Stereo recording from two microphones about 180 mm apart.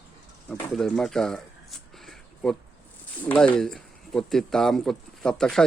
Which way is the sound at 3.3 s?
5° left (ahead or behind).